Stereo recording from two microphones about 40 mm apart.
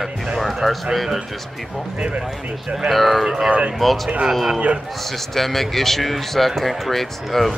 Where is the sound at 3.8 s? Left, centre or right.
Centre.